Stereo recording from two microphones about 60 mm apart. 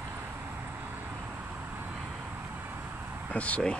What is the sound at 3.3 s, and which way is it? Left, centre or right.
Speech, left.